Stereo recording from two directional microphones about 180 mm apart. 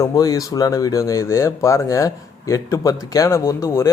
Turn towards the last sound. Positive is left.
turn(degrees=20)  # may be behind; listen again after turning